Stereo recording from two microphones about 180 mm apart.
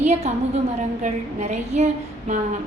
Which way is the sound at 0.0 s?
40° right (ahead or behind).